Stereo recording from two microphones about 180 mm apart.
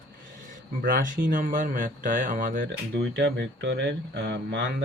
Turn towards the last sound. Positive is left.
turn(degrees=-90)